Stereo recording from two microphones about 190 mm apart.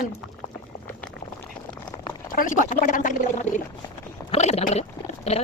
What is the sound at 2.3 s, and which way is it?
Speech, 45° left (ahead or behind).